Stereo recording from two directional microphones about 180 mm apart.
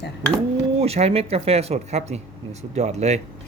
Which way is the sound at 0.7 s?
35° right (ahead or behind).